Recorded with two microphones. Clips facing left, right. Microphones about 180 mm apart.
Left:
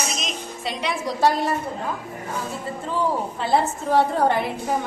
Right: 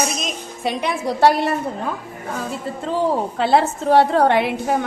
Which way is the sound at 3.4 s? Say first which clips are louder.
Right 4 dB; 80° right.